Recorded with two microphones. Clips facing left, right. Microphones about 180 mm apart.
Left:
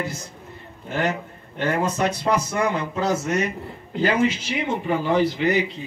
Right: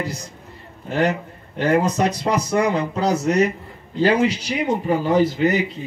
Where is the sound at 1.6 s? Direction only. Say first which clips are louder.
Right 4 dB; 40° right (ahead or behind).